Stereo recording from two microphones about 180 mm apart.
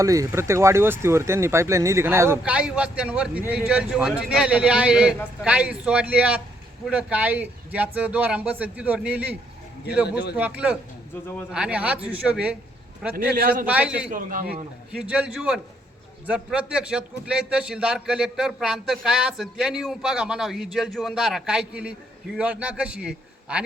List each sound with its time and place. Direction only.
0.0 s speech: 20° right (ahead or behind)
10.3 s speech: 10° right (ahead or behind)
13.1 s a man's voice: 55° right (ahead or behind)
13.7 s speech: 5° right (ahead or behind)
14.1 s a man's voice: 50° right (ahead or behind)
14.5 s a man's voice: 5° right (ahead or behind)